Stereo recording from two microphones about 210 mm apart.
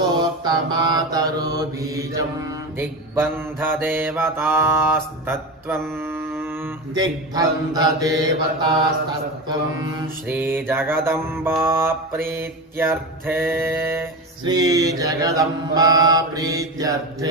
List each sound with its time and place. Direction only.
0.2 s mantra: 20° right (ahead or behind)
5.9 s a sound: 10° right (ahead or behind)
10.2 s mantra: 10° right (ahead or behind)